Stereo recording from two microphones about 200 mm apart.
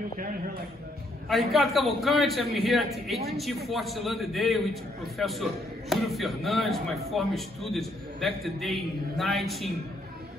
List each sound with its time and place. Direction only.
1.5 s a man's voice: centre (ahead or behind)